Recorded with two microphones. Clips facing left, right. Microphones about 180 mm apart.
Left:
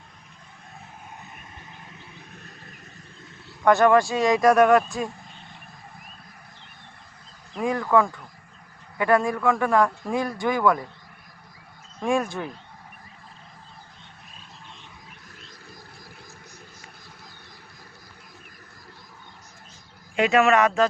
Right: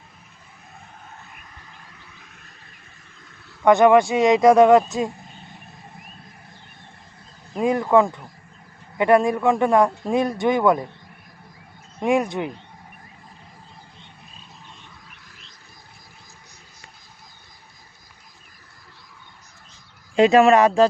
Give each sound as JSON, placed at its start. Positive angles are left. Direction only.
{"t": 3.6, "sound": "a man's voice", "side_deg": -15}
{"t": 7.6, "sound": "a man's voice", "side_deg": -25}
{"t": 11.9, "sound": "a man's voice", "side_deg": -20}
{"t": 20.1, "sound": "speech", "side_deg": -35}